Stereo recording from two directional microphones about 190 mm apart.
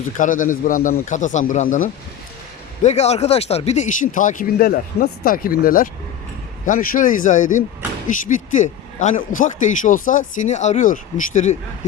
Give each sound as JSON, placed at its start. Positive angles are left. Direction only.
{"t": 0.2, "sound": "a man's voice", "side_deg": 45}
{"t": 2.8, "sound": "a man's voice", "side_deg": 35}